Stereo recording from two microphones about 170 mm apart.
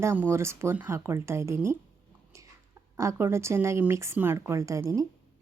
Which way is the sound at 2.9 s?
15° right (ahead or behind).